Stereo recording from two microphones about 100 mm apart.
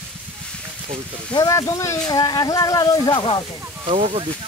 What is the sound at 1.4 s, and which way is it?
Speech, 30° left (ahead or behind).